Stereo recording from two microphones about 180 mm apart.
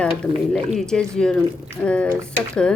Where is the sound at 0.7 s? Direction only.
5° left (ahead or behind).